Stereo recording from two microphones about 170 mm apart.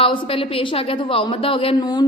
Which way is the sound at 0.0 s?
30° left (ahead or behind).